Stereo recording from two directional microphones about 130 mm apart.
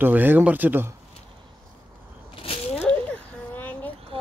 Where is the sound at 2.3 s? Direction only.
45° left (ahead or behind).